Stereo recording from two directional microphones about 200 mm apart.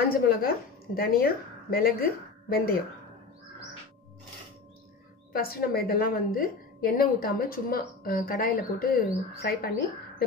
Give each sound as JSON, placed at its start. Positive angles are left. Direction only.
{"t": 0.1, "sound": "a woman's voice", "side_deg": 45}
{"t": 5.3, "sound": "a woman's voice", "side_deg": 45}